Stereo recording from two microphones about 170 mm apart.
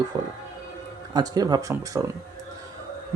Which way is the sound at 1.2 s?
25° right (ahead or behind).